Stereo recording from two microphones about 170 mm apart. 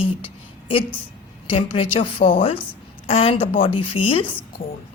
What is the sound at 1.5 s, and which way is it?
A woman's voice, 30° left (ahead or behind).